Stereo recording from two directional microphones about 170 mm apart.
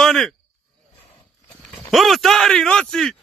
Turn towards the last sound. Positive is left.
turn(degrees=5)  # may be behind; listen again after turning